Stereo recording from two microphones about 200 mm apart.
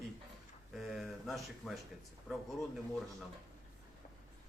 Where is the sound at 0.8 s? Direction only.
Centre (ahead or behind).